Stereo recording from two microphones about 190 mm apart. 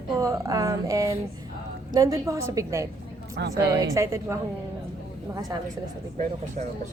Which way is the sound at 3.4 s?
60° right (ahead or behind).